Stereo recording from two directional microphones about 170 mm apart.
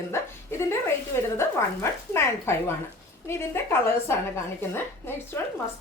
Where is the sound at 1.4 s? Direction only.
15° left (ahead or behind).